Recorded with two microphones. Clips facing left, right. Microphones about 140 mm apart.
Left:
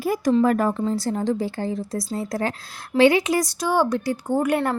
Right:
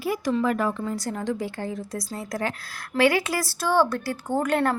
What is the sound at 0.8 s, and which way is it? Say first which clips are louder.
A woman's voice: left 5 dB; 30° left (ahead or behind).